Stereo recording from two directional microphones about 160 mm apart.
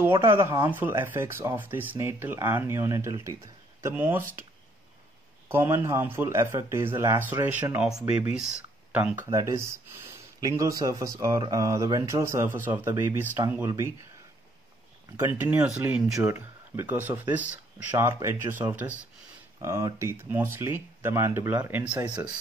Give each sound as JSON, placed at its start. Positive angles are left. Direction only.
{"t": 0.0, "sound": "speech", "side_deg": -15}
{"t": 5.5, "sound": "speech", "side_deg": -15}
{"t": 15.1, "sound": "speech", "side_deg": -15}